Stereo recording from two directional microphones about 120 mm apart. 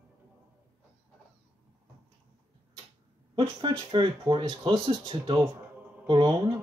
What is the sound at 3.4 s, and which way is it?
Speech, 30° right (ahead or behind).